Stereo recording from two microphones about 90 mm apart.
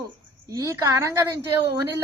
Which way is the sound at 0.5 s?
40° right (ahead or behind).